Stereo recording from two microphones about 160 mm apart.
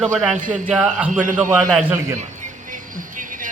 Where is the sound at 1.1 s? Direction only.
55° right (ahead or behind).